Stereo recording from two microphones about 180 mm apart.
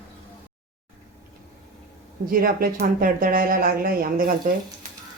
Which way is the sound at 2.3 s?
55° right (ahead or behind).